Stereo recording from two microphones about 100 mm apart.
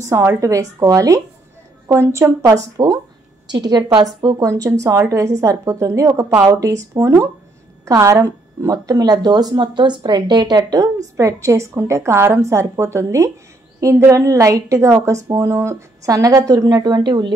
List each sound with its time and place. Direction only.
0.0 s a woman's voice: 30° right (ahead or behind)
3.4 s a woman's voice: 45° right (ahead or behind)